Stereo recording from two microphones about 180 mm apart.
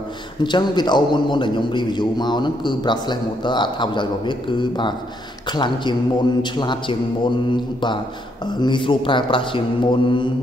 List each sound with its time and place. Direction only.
0.4 s a man's voice: 25° left (ahead or behind)